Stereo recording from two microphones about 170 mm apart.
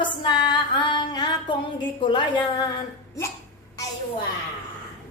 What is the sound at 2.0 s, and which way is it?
Speech, 30° left (ahead or behind).